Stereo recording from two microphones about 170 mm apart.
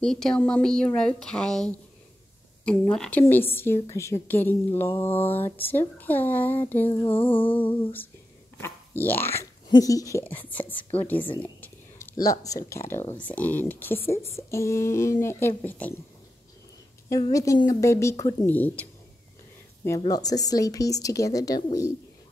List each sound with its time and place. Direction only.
0.0 s a woman's voice: 5° left (ahead or behind)
6.9 s a sound: 30° left (ahead or behind)
8.5 s speech: 15° left (ahead or behind)
17.1 s speech: 20° left (ahead or behind)
20.1 s speech: 20° left (ahead or behind)